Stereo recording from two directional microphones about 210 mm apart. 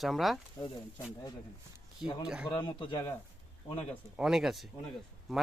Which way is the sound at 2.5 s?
20° left (ahead or behind).